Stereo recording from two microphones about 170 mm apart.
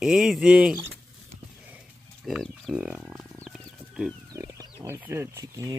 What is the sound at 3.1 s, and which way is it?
Wild animals, 15° right (ahead or behind).